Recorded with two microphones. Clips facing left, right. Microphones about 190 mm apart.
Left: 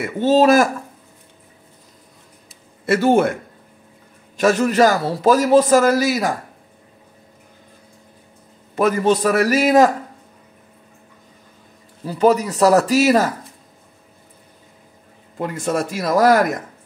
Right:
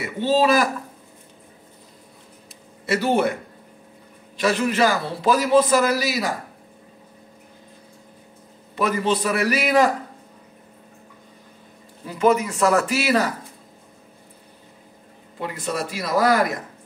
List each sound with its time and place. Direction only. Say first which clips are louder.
0.0 s a man's voice: left 5 dB; 45° left (ahead or behind)
2.9 s a man's voice: left 5 dB; 50° left (ahead or behind)
4.4 s a man's voice: left 5 dB; 45° left (ahead or behind)
8.7 s a man's voice: left 5 dB; 45° left (ahead or behind)
12.1 s speech: left 3 dB; 35° left (ahead or behind)
15.3 s a man's voice: left 6 dB; 50° left (ahead or behind)